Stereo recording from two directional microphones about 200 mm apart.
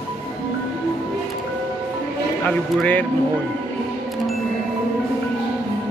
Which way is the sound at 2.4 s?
5° left (ahead or behind).